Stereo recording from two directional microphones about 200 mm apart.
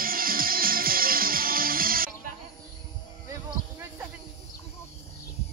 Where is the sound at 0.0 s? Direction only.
45° right (ahead or behind).